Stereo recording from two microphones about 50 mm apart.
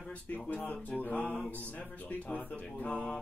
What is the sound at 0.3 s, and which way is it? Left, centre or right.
Speech, left.